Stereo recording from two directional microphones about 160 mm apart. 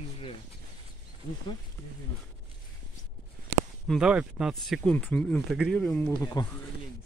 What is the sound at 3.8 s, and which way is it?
Speech, 5° right (ahead or behind).